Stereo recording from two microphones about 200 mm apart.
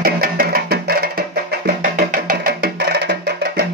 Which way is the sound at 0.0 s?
50° right (ahead or behind).